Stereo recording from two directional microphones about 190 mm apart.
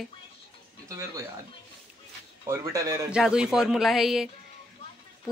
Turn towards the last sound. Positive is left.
turn(degrees=0)  # may be behind; listen again after turning